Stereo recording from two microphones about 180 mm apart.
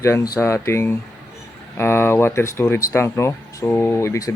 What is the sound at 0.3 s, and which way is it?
Speech, 15° left (ahead or behind).